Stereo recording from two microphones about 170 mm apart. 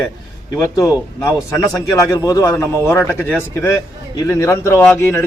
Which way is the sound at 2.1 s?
20° left (ahead or behind).